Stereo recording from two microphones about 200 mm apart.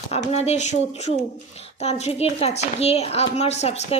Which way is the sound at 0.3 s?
35° left (ahead or behind).